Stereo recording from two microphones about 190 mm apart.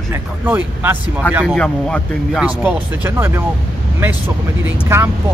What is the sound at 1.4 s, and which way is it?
A man's voice, 5° left (ahead or behind).